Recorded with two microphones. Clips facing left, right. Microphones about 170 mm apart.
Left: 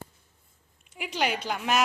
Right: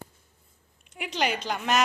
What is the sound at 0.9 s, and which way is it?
Speech, centre (ahead or behind).